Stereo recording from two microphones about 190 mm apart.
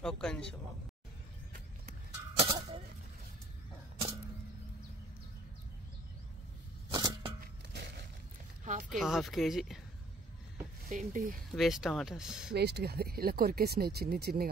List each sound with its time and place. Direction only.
0.0 s speech: 5° left (ahead or behind)
1.5 s music: 35° right (ahead or behind)
6.9 s a sound: 25° right (ahead or behind)
8.6 s a sound: 45° right (ahead or behind)
8.9 s speech: centre (ahead or behind)
10.9 s speech: 45° right (ahead or behind)
11.5 s speech: centre (ahead or behind)
12.5 s speech: 60° right (ahead or behind)